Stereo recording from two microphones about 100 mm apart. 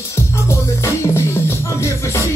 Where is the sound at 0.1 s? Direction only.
30° left (ahead or behind).